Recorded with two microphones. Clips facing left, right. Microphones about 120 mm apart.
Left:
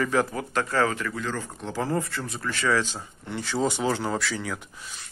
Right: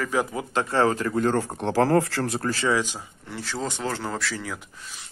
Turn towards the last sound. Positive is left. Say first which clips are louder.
# left 1 dB
turn(degrees=0)  # may be behind; listen again after turning